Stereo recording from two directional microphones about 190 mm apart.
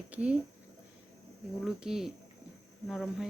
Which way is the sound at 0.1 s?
5° right (ahead or behind).